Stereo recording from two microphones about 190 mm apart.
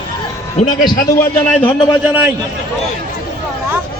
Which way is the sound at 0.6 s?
40° left (ahead or behind).